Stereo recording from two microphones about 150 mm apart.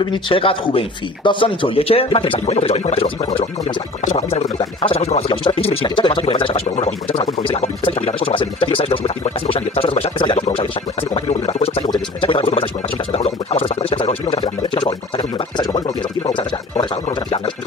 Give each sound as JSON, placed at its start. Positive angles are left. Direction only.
{"t": 0.0, "sound": "speech", "side_deg": 35}
{"t": 4.6, "sound": "speech", "side_deg": 40}